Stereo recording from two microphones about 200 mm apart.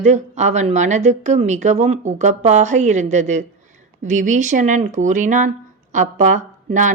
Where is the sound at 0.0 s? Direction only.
35° right (ahead or behind).